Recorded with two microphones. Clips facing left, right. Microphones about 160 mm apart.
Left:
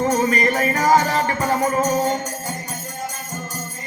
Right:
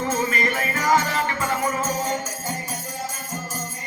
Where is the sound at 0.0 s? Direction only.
40° left (ahead or behind).